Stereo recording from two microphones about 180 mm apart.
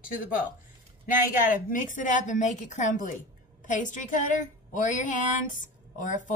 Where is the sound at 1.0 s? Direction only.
50° left (ahead or behind).